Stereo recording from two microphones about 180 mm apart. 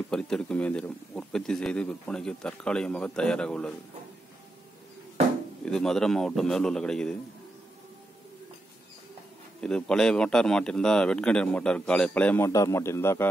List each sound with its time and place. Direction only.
0.1 s speech: 5° left (ahead or behind)
5.7 s speech: centre (ahead or behind)
9.6 s speech: 5° left (ahead or behind)